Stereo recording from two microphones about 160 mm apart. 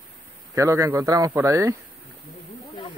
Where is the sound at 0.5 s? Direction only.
20° right (ahead or behind).